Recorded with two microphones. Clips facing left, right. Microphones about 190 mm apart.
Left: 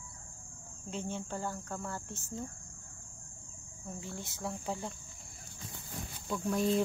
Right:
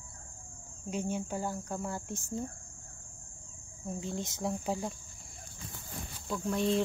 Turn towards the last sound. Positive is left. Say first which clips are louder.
# even
turn(degrees=0)  # may be behind; listen again after turning